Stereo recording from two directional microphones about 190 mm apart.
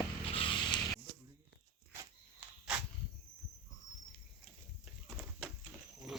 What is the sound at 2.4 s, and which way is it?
Dog, 5° right (ahead or behind).